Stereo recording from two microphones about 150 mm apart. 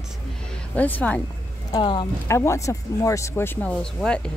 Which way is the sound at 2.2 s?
20° left (ahead or behind).